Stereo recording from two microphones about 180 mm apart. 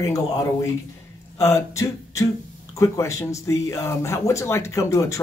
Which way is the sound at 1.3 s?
15° left (ahead or behind).